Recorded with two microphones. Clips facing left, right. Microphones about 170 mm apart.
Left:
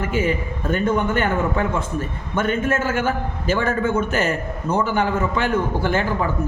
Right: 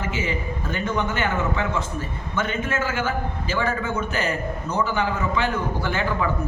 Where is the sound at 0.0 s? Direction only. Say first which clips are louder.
Left 5 dB; 50° left (ahead or behind).